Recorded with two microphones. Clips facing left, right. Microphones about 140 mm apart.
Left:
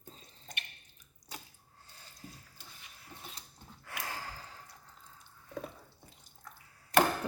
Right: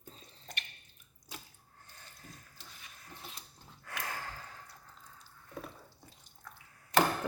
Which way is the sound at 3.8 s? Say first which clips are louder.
Right 1 dB; 25° left (ahead or behind).